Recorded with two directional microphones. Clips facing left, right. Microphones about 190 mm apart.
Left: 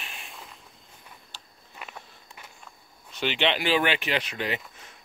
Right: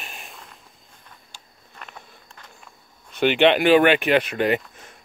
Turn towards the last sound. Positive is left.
turn(degrees=-55)  # may be behind; listen again after turning